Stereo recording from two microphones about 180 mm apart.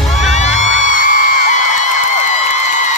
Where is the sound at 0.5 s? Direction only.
90° right.